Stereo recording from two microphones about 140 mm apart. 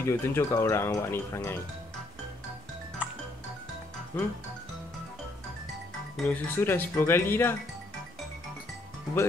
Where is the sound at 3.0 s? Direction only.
10° right (ahead or behind).